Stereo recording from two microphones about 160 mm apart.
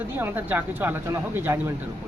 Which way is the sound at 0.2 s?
10° right (ahead or behind).